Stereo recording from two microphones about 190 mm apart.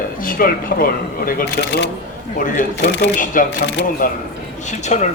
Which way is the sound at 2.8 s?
65° left (ahead or behind).